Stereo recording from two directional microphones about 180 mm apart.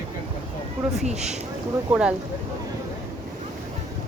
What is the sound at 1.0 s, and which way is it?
Speech, 40° right (ahead or behind).